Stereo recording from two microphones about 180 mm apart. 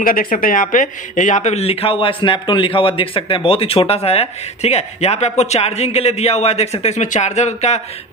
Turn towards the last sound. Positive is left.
turn(degrees=40)  # may be behind; listen again after turning